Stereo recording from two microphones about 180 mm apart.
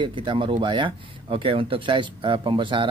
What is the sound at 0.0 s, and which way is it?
Speech, 25° right (ahead or behind).